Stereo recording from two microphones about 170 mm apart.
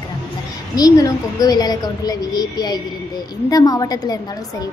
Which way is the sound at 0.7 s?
20° left (ahead or behind).